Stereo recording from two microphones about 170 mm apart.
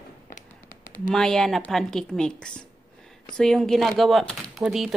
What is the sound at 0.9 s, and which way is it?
Speech, 5° left (ahead or behind).